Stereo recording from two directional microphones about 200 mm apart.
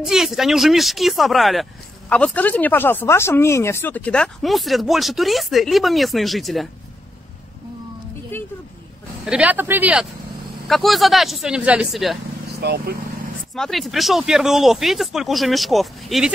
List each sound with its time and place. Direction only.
0.0 s speech: centre (ahead or behind)
8.3 s a sound: 10° left (ahead or behind)
9.2 s speech: 5° right (ahead or behind)
12.5 s speech: 50° right (ahead or behind)
13.6 s speech: centre (ahead or behind)